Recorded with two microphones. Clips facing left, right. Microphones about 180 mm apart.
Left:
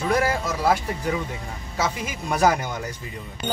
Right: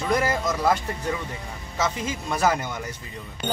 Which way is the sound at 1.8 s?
10° left (ahead or behind).